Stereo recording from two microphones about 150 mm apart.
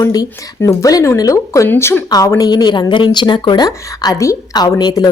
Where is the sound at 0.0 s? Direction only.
25° left (ahead or behind).